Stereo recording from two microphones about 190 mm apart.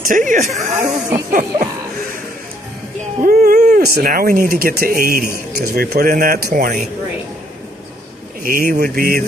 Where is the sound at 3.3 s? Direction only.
50° right (ahead or behind).